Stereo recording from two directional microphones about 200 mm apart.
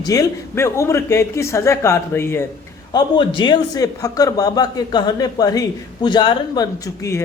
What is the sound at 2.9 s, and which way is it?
A man's voice, 25° left (ahead or behind).